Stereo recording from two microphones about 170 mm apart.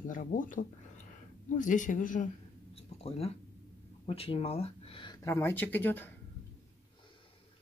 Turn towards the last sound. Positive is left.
turn(degrees=10)  # may be behind; listen again after turning